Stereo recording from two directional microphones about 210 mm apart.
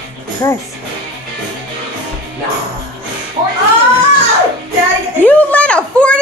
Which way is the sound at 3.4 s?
20° right (ahead or behind).